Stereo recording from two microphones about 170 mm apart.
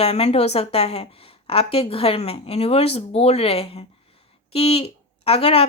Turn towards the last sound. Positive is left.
turn(degrees=35)  # may be behind; listen again after turning